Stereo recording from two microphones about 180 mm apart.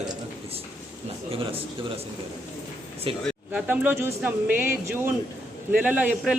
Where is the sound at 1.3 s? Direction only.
30° right (ahead or behind).